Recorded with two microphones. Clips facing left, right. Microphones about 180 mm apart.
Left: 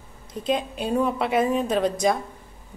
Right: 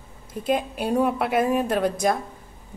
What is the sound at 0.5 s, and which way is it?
A woman's voice, 5° right (ahead or behind).